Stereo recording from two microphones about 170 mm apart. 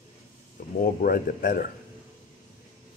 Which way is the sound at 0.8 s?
55° left (ahead or behind).